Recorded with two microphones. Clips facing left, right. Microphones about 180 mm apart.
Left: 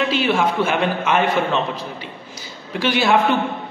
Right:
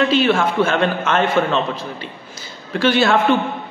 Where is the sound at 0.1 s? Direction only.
15° left (ahead or behind).